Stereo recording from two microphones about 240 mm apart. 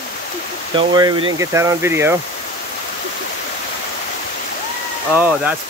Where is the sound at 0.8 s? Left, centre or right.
Centre.